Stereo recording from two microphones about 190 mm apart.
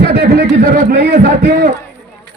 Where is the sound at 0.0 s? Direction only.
60° right (ahead or behind).